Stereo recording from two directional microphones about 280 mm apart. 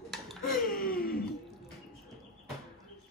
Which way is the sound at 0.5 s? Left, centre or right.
Left.